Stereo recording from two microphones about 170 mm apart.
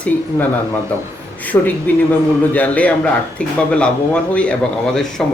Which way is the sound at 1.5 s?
20° left (ahead or behind).